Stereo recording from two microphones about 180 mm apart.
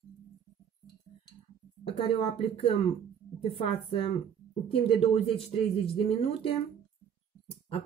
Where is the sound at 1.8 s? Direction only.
30° left (ahead or behind).